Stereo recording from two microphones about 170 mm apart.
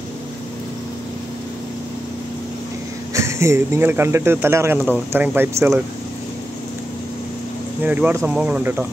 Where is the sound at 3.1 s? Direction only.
15° right (ahead or behind).